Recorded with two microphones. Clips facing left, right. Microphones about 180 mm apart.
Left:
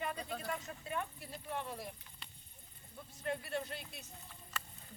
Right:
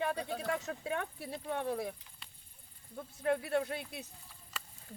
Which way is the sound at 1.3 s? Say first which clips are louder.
Right 7 dB; 65° right (ahead or behind).